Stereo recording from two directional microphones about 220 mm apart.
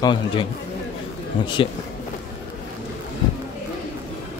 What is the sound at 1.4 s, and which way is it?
Speech, 20° left (ahead or behind).